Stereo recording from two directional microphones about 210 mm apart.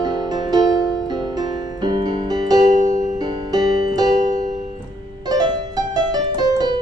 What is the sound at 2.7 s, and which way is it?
Music, 35° right (ahead or behind).